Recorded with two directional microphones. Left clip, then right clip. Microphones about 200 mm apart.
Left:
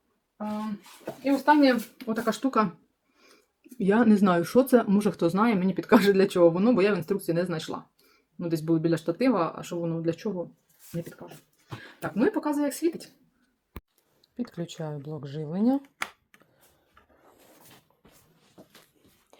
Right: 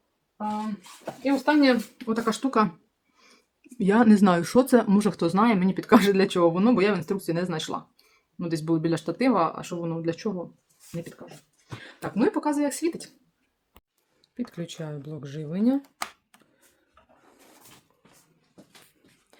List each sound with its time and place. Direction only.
1.2 s speech: 20° right (ahead or behind)
12.1 s speech: 20° right (ahead or behind)
14.2 s speech: 5° right (ahead or behind)